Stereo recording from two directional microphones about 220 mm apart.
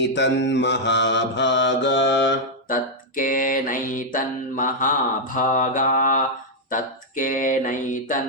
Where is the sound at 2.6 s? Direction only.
40° left (ahead or behind).